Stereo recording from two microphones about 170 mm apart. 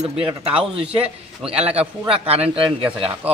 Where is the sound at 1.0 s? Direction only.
5° right (ahead or behind).